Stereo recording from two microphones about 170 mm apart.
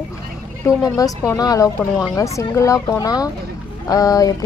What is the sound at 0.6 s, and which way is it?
A woman's voice, 20° left (ahead or behind).